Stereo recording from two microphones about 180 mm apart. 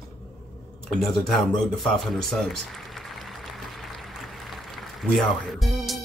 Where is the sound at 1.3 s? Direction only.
Centre (ahead or behind).